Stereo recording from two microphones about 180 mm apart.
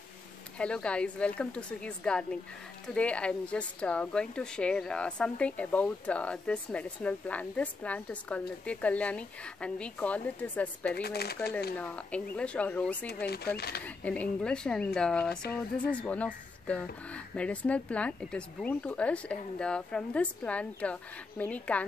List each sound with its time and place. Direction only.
0.6 s speech: 5° left (ahead or behind)
10.9 s speech: 60° left (ahead or behind)
11.8 s speech: 5° left (ahead or behind)
13.2 s speech: 60° left (ahead or behind)
13.8 s a woman's voice: 5° left (ahead or behind)